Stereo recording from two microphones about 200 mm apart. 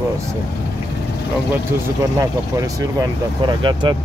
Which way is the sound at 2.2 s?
15° right (ahead or behind).